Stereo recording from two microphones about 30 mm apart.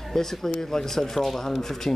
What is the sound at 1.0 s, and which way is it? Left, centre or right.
Speech, centre.